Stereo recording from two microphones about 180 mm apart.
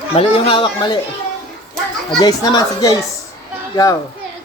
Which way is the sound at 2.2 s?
25° left (ahead or behind).